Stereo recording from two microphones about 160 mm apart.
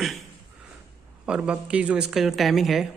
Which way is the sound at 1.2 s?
5° right (ahead or behind).